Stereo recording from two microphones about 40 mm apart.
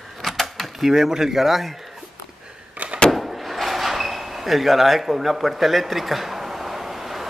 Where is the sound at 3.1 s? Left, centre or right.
Centre.